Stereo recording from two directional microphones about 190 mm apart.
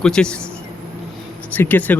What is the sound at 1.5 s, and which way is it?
Speech, 10° left (ahead or behind).